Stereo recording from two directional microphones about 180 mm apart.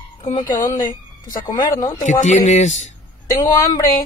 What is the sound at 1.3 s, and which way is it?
Speech, 20° left (ahead or behind).